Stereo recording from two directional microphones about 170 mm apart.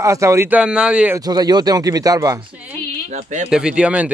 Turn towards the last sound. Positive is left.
turn(degrees=-5)  # may be behind; listen again after turning